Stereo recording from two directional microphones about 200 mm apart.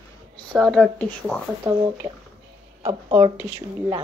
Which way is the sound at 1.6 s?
15° right (ahead or behind).